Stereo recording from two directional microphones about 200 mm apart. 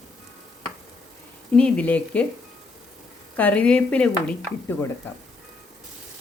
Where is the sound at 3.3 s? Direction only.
5° left (ahead or behind).